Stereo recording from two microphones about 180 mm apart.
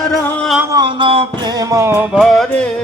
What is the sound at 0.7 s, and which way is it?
Music, 25° right (ahead or behind).